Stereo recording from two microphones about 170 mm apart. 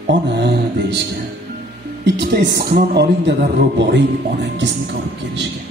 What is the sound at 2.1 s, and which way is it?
Music, 80° right.